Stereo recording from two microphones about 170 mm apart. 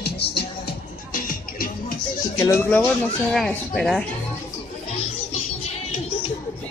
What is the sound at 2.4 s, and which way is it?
Speech, 15° left (ahead or behind).